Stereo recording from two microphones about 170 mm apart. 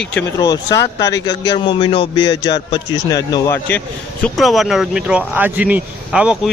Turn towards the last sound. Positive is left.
turn(degrees=-5)  # may be behind; listen again after turning